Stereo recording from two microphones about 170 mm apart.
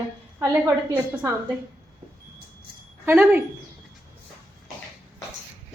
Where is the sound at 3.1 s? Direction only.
10° right (ahead or behind).